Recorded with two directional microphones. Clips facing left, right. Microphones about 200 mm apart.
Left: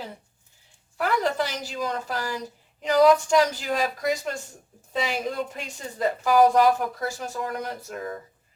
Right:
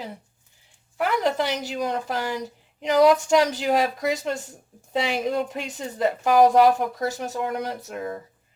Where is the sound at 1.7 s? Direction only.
20° right (ahead or behind).